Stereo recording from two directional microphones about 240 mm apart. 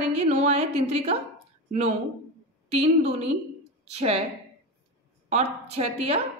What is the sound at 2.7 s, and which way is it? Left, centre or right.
A woman's voice, right.